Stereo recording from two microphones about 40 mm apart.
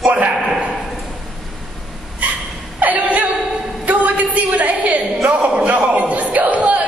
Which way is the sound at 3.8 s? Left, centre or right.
Right.